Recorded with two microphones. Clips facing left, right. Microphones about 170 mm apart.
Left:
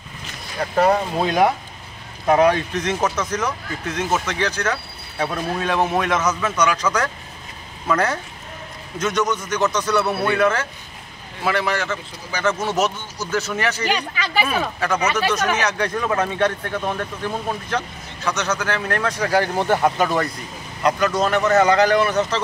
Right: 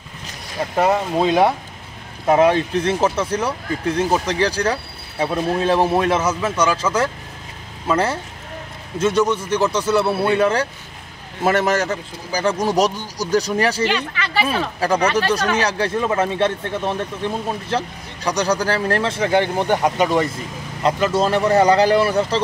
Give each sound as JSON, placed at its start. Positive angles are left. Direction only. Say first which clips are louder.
{"t": 0.7, "sound": "speech", "louder": "even", "side_deg": -20}
{"t": 11.4, "sound": "speech", "louder": "right 4 dB", "side_deg": -45}
{"t": 13.9, "sound": "speech", "louder": "right 1 dB", "side_deg": 15}
{"t": 15.1, "sound": "speech", "louder": "right 2 dB", "side_deg": -35}